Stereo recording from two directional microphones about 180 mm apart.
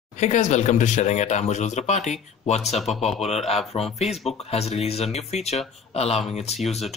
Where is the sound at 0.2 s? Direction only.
40° left (ahead or behind).